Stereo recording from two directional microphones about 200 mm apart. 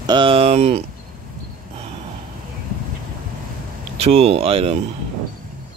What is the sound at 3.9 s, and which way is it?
Speech, 30° right (ahead or behind).